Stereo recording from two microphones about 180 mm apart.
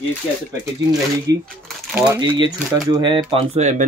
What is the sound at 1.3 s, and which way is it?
A man's voice, 20° right (ahead or behind).